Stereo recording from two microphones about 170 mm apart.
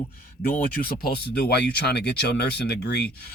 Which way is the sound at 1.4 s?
70° left (ahead or behind).